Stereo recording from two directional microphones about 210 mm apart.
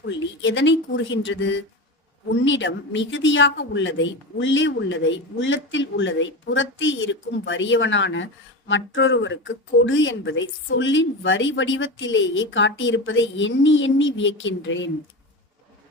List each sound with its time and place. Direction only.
0.0 s a woman's voice: 60° left (ahead or behind)